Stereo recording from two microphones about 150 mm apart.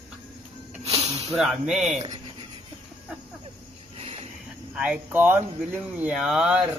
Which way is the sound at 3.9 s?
40° right (ahead or behind).